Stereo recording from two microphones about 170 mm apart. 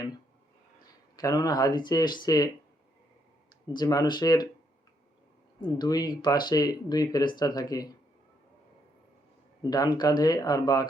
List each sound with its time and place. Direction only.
1.1 s speech: 20° left (ahead or behind)
3.7 s speech: 25° left (ahead or behind)
5.5 s speech: 25° left (ahead or behind)
9.6 s speech: 20° left (ahead or behind)